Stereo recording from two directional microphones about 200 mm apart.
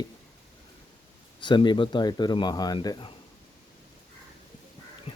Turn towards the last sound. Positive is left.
turn(degrees=25)  # may be behind; listen again after turning